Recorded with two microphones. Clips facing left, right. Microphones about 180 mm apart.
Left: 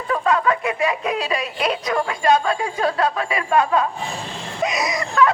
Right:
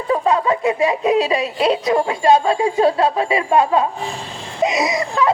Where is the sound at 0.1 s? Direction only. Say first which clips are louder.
Right 2 dB; 25° right (ahead or behind).